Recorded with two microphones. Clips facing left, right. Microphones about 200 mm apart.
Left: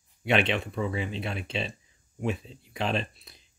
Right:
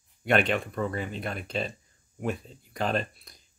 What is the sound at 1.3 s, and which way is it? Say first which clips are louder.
Speech: right 1 dB; 45° right (ahead or behind).